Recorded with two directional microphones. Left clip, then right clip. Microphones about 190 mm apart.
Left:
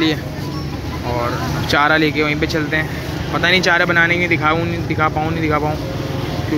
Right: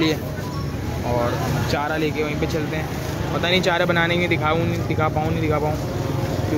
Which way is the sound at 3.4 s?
Centre (ahead or behind).